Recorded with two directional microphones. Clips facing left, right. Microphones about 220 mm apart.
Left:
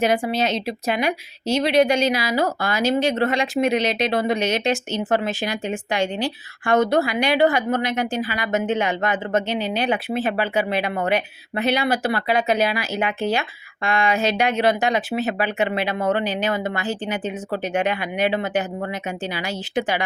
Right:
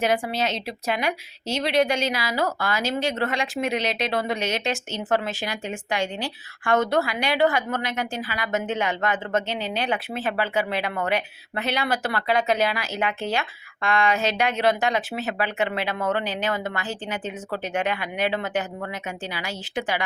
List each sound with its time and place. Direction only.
0.3 s a woman's voice: 15° left (ahead or behind)